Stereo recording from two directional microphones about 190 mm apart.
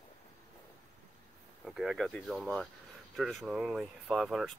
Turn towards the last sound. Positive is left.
turn(degrees=0)  # may be behind; listen again after turning